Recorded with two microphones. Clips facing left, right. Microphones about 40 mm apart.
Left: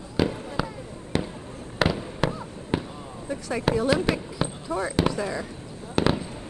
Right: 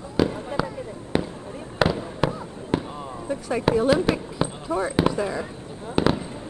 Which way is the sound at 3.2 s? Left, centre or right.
Centre.